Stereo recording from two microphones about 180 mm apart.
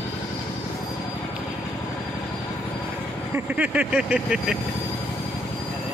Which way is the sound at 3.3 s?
5° right (ahead or behind).